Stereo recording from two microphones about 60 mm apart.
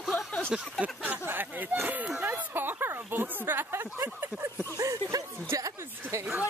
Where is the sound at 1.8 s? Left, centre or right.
Right.